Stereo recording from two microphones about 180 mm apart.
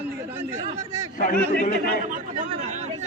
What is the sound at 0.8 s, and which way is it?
Chatter, 15° right (ahead or behind).